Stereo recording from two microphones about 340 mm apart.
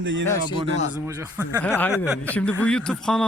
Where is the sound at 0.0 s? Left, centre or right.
Right.